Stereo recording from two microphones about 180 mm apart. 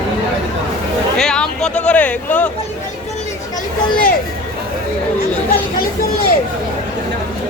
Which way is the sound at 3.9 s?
50° left (ahead or behind).